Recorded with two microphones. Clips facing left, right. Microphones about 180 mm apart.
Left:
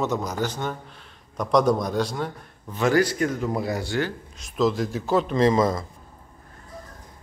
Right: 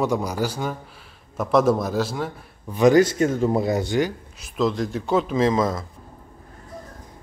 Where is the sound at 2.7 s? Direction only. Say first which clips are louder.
Right 5 dB; 20° right (ahead or behind).